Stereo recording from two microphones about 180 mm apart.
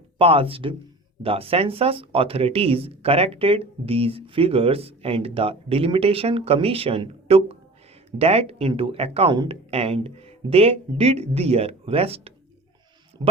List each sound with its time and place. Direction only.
0.2 s speech: 30° right (ahead or behind)